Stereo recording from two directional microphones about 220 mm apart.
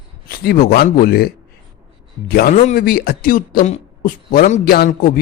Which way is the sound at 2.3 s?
45° left (ahead or behind).